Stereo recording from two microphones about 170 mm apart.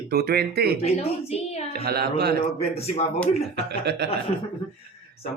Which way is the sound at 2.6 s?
40° left (ahead or behind).